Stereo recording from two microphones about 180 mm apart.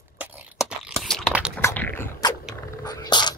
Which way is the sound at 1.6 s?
10° left (ahead or behind).